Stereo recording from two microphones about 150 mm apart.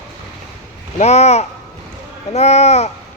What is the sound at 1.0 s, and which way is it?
A man's voice, 45° left (ahead or behind).